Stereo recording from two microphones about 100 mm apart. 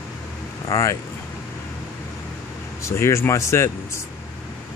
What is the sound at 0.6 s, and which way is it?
Speech, 30° left (ahead or behind).